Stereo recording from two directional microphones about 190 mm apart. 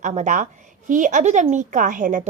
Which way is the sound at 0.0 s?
40° right (ahead or behind).